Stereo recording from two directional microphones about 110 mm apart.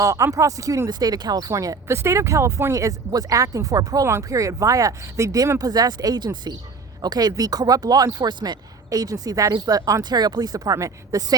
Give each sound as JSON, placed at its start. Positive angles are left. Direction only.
{"t": 0.0, "sound": "speech", "side_deg": -30}